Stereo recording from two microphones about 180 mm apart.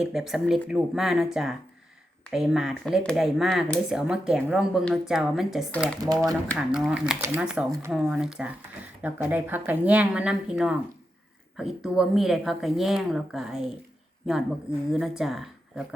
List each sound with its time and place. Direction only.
0.0 s speech: centre (ahead or behind)
7.7 s a woman's voice: 15° right (ahead or behind)
7.9 s a woman's voice: 5° right (ahead or behind)